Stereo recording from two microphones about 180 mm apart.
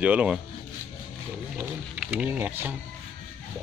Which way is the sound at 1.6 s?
5° right (ahead or behind).